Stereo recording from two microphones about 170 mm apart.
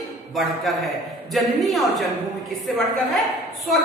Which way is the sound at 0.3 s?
Centre (ahead or behind).